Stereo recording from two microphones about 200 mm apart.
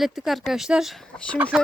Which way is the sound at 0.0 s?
Centre (ahead or behind).